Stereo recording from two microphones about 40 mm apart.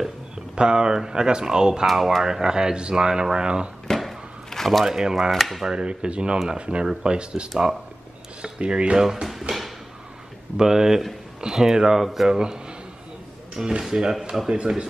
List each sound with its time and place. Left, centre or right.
0.6 s speech: right
4.0 s a sound: centre
4.8 s speech: centre
5.3 s speech: centre
5.7 s speech: right
9.0 s speech: centre
13.6 s speech: centre